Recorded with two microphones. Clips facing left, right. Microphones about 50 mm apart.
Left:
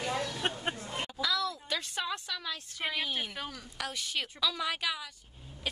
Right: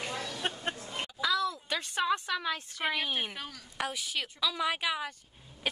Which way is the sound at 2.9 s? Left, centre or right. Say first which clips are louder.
Right 2 dB; right.